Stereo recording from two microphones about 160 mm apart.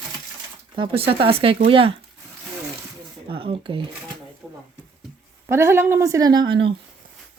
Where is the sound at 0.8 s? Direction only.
35° right (ahead or behind).